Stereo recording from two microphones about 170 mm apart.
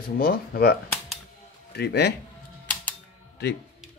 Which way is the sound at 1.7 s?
80° left.